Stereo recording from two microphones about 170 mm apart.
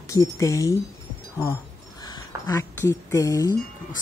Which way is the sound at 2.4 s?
20° left (ahead or behind).